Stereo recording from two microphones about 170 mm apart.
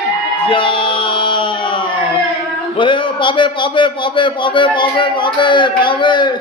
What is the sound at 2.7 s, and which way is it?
A man's voice, 30° left (ahead or behind).